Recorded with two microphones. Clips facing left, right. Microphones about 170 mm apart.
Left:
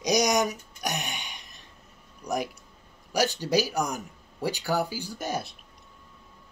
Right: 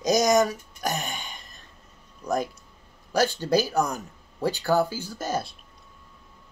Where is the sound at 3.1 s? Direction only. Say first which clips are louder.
Right 2 dB; 15° left (ahead or behind).